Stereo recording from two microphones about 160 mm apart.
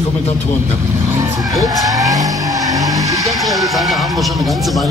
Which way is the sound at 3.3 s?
Centre (ahead or behind).